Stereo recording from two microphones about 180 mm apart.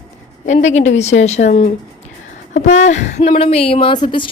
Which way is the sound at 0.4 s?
40° left (ahead or behind).